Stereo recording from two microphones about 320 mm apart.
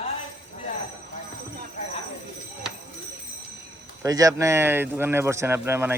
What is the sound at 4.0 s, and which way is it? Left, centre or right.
Speech, centre.